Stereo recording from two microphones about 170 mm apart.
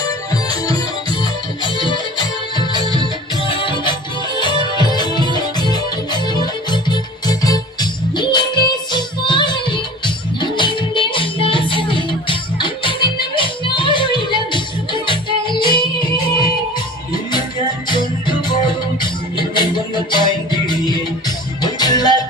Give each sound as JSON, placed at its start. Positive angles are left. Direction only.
{"t": 1.9, "sound": "music", "side_deg": 25}
{"t": 2.7, "sound": "music", "side_deg": -25}
{"t": 3.0, "sound": "music", "side_deg": 30}
{"t": 17.8, "sound": "music", "side_deg": 25}